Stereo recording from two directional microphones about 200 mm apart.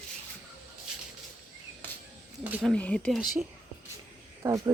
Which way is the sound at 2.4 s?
10° right (ahead or behind).